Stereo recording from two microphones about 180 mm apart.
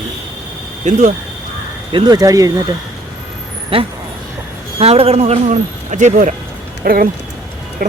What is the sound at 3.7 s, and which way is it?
A man's voice, 30° right (ahead or behind).